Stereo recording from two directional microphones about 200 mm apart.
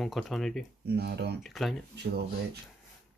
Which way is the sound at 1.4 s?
Centre (ahead or behind).